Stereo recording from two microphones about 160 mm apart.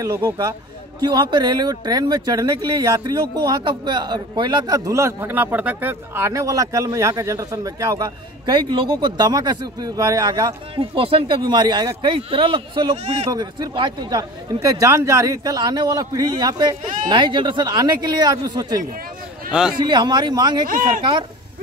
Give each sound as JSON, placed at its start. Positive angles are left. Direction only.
{"t": 0.0, "sound": "speech", "side_deg": -20}
{"t": 13.3, "sound": "speech", "side_deg": -25}
{"t": 20.6, "sound": "speech", "side_deg": -60}
{"t": 21.0, "sound": "speech", "side_deg": -30}